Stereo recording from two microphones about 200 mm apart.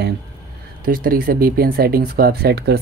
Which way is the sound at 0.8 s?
45° right (ahead or behind).